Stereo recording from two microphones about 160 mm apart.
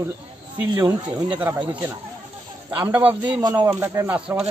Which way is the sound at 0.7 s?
25° right (ahead or behind).